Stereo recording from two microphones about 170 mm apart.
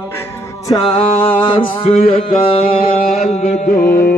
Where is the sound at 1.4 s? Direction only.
30° left (ahead or behind).